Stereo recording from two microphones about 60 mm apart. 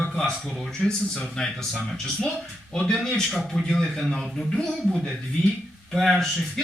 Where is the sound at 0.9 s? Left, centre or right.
Centre.